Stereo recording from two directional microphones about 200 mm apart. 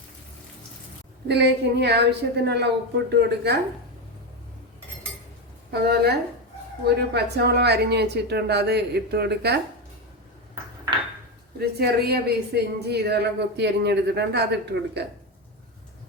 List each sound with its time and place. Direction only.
1.3 s a woman's voice: 55° right (ahead or behind)
5.7 s a woman's voice: 50° right (ahead or behind)
11.6 s a woman's voice: 50° right (ahead or behind)